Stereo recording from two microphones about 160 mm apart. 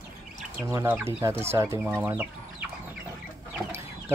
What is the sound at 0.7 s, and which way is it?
Speech, 15° right (ahead or behind).